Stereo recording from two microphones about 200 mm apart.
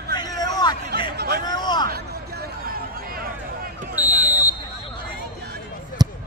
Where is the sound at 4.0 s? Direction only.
10° right (ahead or behind).